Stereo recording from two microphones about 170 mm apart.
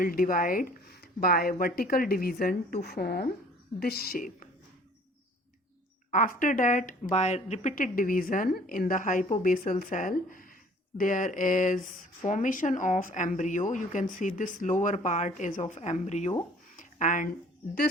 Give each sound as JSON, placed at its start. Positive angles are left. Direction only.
{"t": 0.0, "sound": "a woman's voice", "side_deg": 55}
{"t": 6.1, "sound": "speech", "side_deg": 50}
{"t": 16.7, "sound": "a sound", "side_deg": 50}